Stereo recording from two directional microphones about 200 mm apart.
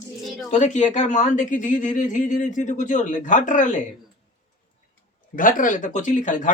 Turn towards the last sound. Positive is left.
turn(degrees=40)  # may be behind; listen again after turning